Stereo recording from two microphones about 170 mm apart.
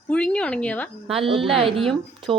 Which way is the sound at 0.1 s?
5° left (ahead or behind).